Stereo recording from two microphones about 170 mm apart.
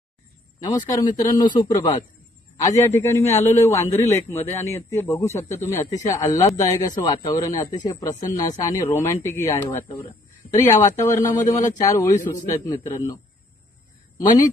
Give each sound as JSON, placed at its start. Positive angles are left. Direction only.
{"t": 0.6, "sound": "a man's voice", "side_deg": 20}